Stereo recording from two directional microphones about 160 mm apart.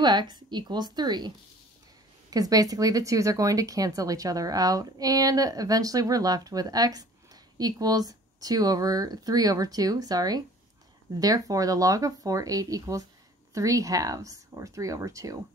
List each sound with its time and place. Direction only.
0.0 s speech: 25° right (ahead or behind)
2.3 s speech: 20° right (ahead or behind)